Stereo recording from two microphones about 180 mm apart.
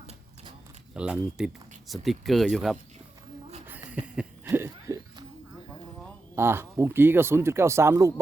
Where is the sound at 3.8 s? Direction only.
10° right (ahead or behind).